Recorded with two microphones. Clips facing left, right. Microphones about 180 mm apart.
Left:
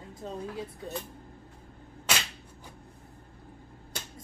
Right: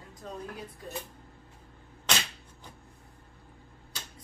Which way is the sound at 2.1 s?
10° left (ahead or behind).